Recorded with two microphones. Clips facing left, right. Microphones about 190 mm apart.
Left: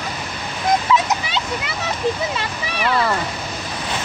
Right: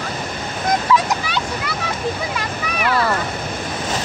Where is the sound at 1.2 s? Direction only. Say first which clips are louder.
Right 1 dB; 20° left (ahead or behind).